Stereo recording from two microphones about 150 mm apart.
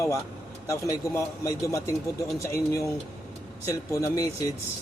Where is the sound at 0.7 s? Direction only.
20° left (ahead or behind).